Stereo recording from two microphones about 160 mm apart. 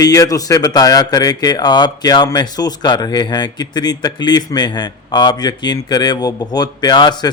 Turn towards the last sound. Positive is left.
turn(degrees=25)  # may be behind; listen again after turning